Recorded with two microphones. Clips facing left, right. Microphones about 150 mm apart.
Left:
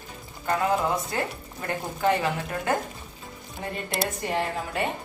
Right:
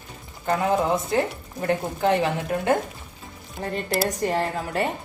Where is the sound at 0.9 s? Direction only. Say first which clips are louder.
Right 5 dB; 25° right (ahead or behind).